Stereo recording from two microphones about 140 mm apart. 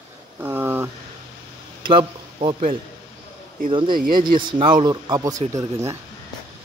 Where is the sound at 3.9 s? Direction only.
90° right.